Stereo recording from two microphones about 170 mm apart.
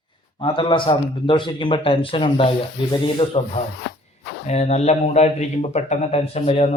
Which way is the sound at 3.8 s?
75° left (ahead or behind).